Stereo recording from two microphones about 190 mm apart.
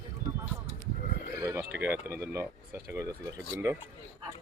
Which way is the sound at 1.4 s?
15° right (ahead or behind).